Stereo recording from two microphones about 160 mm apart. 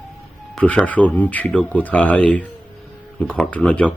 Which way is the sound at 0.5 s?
10° left (ahead or behind).